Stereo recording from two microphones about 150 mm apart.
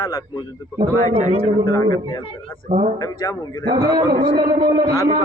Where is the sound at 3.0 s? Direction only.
25° left (ahead or behind).